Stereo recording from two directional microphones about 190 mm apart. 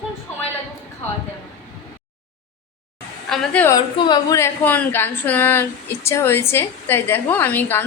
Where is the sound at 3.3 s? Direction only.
5° left (ahead or behind).